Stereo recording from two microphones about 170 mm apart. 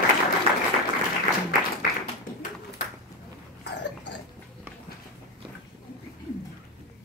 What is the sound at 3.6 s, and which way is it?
Burping, 90° left.